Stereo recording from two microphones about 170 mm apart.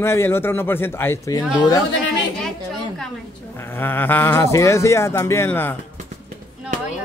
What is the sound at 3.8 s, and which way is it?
A man's voice, 10° left (ahead or behind).